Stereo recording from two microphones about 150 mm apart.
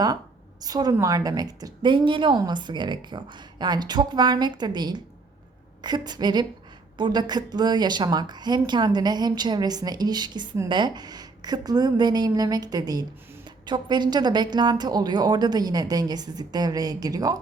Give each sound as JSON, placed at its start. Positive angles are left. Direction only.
{"t": 0.6, "sound": "a woman's voice", "side_deg": -25}